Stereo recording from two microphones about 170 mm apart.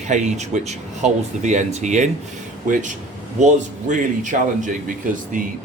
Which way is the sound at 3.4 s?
45° right (ahead or behind).